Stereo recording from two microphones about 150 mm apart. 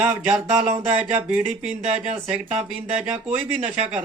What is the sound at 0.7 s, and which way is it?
Speech, 50° right (ahead or behind).